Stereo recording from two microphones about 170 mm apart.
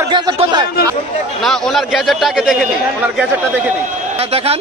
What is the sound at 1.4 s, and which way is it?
A man's voice, centre (ahead or behind).